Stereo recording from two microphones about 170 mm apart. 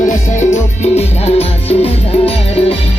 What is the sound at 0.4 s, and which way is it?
Music, 40° left (ahead or behind).